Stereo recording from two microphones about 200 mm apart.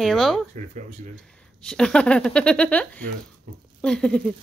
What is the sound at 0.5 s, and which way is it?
Speech, 35° right (ahead or behind).